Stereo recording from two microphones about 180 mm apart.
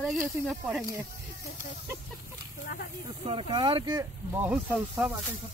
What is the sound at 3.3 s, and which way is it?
Speech, 25° right (ahead or behind).